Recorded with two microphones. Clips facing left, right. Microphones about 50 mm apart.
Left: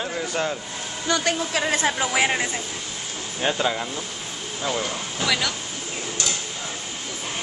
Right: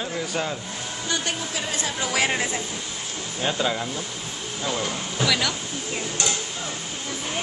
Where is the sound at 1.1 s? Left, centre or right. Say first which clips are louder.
Left 6 dB; left.